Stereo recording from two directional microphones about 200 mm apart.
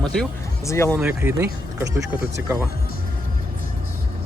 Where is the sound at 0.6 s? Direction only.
15° left (ahead or behind).